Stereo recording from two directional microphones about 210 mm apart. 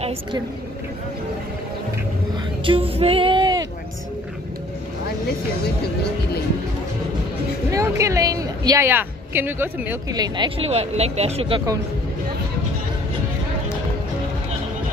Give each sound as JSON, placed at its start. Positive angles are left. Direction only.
{"t": 2.6, "sound": "female singing", "side_deg": -25}
{"t": 7.7, "sound": "a woman's voice", "side_deg": -15}